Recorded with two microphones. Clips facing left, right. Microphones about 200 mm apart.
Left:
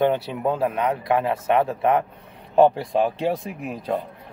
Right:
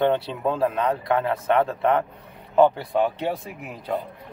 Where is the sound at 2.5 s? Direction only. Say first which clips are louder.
Left 1 dB; 30° left (ahead or behind).